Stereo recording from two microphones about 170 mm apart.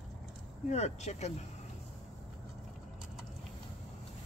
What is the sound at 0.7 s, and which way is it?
Speech, 40° left (ahead or behind).